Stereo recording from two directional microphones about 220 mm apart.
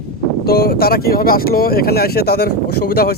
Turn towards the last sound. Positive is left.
turn(degrees=45)  # may be behind; listen again after turning